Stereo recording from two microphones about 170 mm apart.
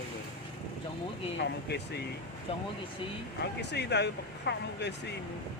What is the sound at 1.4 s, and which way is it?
Speech, 85° left.